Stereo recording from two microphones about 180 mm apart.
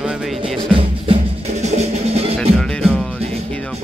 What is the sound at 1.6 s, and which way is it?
Music, 35° right (ahead or behind).